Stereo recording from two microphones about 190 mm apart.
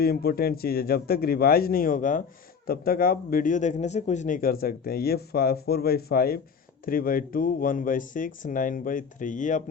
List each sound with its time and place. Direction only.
0.0 s speech: 55° left (ahead or behind)